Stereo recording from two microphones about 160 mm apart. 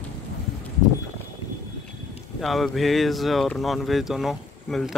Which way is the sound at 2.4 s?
Centre (ahead or behind).